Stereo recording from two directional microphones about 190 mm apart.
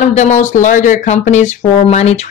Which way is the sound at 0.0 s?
40° left (ahead or behind).